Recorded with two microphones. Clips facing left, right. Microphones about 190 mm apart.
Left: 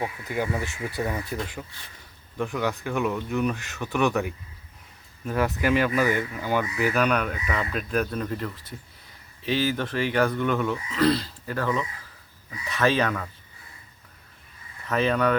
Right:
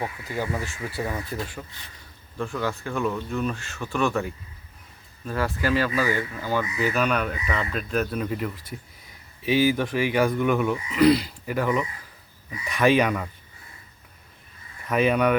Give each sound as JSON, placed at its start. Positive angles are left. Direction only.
{"t": 0.0, "sound": "speech", "side_deg": 15}
{"t": 2.5, "sound": "speech", "side_deg": 15}
{"t": 7.0, "sound": "speech", "side_deg": 0}
{"t": 14.8, "sound": "speech", "side_deg": -15}